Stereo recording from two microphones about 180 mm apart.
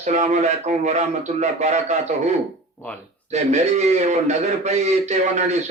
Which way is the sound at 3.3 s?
40° right (ahead or behind).